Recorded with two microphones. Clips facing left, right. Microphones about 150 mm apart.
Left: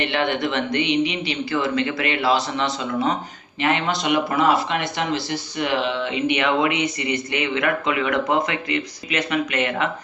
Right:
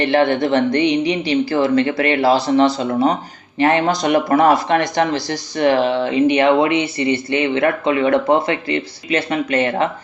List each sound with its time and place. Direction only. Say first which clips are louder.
0.0 s speech: right 7 dB; 35° right (ahead or behind)